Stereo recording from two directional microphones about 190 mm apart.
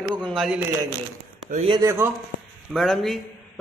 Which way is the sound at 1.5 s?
30° right (ahead or behind).